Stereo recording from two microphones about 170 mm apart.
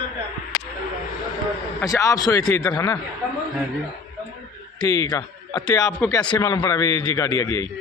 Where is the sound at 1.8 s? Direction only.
20° left (ahead or behind).